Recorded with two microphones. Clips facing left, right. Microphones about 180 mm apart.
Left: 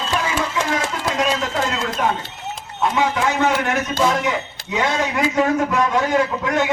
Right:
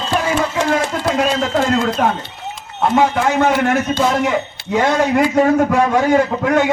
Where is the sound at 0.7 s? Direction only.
55° right (ahead or behind).